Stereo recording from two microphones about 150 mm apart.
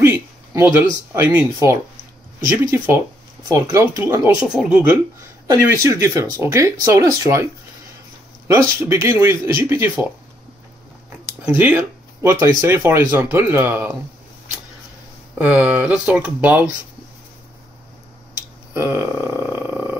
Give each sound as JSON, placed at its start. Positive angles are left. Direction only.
{"t": 0.0, "sound": "speech", "side_deg": -15}
{"t": 4.5, "sound": "speech", "side_deg": -5}
{"t": 5.5, "sound": "speech", "side_deg": -20}
{"t": 8.5, "sound": "speech", "side_deg": -20}
{"t": 11.1, "sound": "speech", "side_deg": -10}
{"t": 15.3, "sound": "speech", "side_deg": -10}
{"t": 18.7, "sound": "speech", "side_deg": -15}